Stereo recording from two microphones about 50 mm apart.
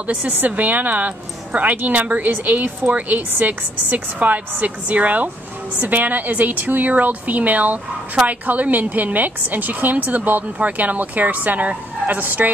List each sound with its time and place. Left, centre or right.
0.0 s a woman's voice: right